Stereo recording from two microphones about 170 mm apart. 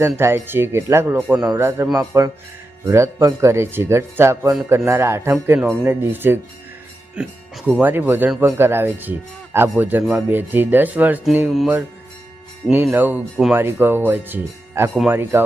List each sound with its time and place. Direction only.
0.2 s speech: 15° right (ahead or behind)
12.7 s speech: 15° right (ahead or behind)